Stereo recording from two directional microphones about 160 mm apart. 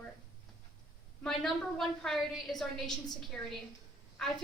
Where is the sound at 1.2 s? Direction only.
5° left (ahead or behind).